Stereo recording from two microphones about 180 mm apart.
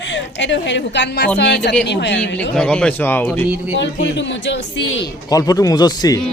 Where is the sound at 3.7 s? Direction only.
80° left.